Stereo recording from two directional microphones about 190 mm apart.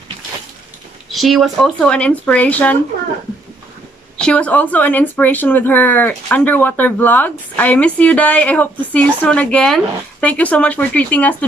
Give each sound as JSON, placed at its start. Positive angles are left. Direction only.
{"t": 1.1, "sound": "speech", "side_deg": 0}
{"t": 4.2, "sound": "speech", "side_deg": 5}